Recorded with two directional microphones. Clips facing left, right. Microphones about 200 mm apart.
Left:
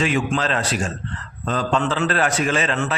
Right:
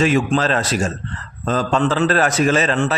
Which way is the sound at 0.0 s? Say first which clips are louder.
Right 5 dB; 40° right (ahead or behind).